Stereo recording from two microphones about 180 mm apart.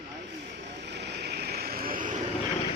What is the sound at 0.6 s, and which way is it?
Vehicle, 70° right (ahead or behind).